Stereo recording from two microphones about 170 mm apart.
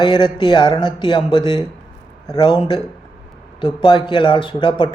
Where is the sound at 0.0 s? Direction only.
25° left (ahead or behind).